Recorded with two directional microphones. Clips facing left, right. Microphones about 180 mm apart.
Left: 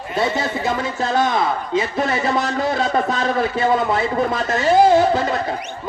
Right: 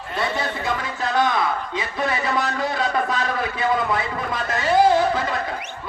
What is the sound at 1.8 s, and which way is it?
Speech, 45° left (ahead or behind).